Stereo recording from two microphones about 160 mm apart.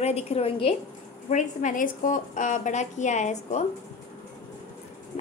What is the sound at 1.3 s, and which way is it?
A woman's voice, 50° left (ahead or behind).